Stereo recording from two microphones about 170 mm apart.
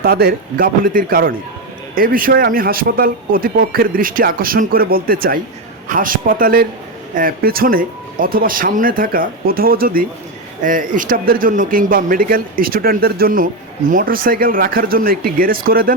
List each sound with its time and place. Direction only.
0.0 s speech: 65° right (ahead or behind)